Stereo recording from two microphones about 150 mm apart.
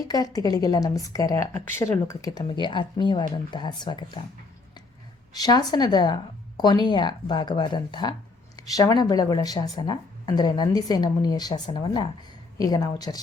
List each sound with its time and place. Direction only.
0.1 s speech: 25° left (ahead or behind)
5.3 s speech: 25° left (ahead or behind)